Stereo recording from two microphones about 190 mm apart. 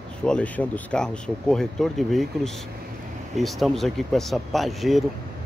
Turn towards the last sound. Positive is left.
turn(degrees=0)  # may be behind; listen again after turning